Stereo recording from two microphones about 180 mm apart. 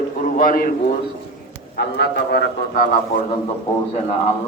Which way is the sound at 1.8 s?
65° left (ahead or behind).